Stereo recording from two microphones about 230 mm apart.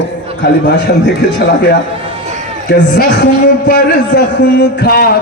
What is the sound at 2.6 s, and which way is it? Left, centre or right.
Speech, left.